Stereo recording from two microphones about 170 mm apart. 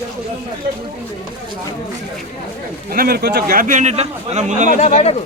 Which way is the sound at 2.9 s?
60° right (ahead or behind).